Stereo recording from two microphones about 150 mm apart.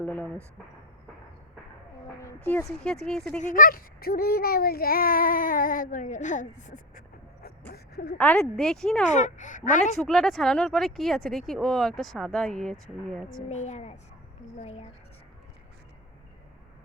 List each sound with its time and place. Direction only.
0.0 s speech: 10° left (ahead or behind)
2.2 s speech: 20° left (ahead or behind)
2.6 s speech: 5° left (ahead or behind)
3.4 s speech: 65° left (ahead or behind)
7.7 s speech: 90° left
8.2 s speech: 10° left (ahead or behind)
9.1 s speech: 55° left (ahead or behind)
10.0 s speech: centre (ahead or behind)
13.5 s a child's voice: 50° left (ahead or behind)